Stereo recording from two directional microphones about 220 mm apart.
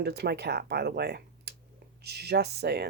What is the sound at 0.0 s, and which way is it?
Speech, 50° right (ahead or behind).